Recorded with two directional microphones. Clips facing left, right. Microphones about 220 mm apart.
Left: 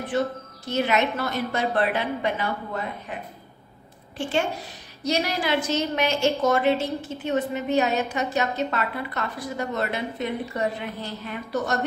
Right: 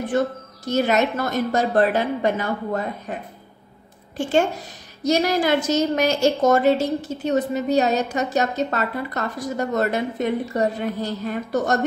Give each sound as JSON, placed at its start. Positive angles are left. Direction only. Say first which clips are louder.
{"t": 0.1, "sound": "a woman's voice", "louder": "right 2 dB", "side_deg": -50}
{"t": 5.0, "sound": "a woman's voice", "louder": "right 6 dB", "side_deg": -45}